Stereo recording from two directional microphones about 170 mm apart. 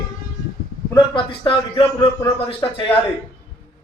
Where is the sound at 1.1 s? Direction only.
30° left (ahead or behind).